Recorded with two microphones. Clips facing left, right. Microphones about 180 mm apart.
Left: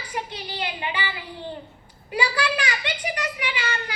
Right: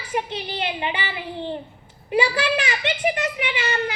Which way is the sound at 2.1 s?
25° right (ahead or behind).